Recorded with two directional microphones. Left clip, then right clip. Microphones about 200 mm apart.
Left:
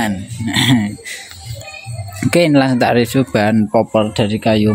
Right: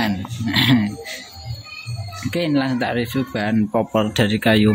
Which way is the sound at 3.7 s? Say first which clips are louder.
Left 4 dB; 5° left (ahead or behind).